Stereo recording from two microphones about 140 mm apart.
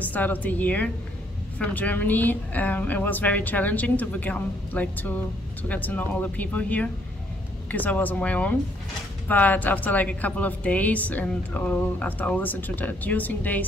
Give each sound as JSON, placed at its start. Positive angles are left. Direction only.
{"t": 0.0, "sound": "a woman's voice", "side_deg": 10}